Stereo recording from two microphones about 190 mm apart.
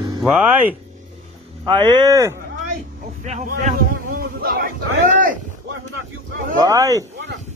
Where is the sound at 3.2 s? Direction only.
40° right (ahead or behind).